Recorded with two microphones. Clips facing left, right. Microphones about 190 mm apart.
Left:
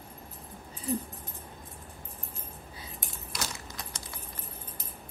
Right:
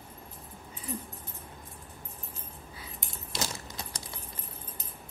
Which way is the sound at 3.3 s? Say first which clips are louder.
Right 3 dB; 25° right (ahead or behind).